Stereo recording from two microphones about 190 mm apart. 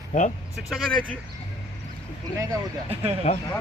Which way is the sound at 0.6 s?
Centre (ahead or behind).